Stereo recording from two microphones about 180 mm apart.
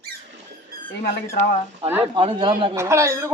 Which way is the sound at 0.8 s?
35° left (ahead or behind).